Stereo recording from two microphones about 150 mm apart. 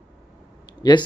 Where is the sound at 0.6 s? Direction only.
30° left (ahead or behind).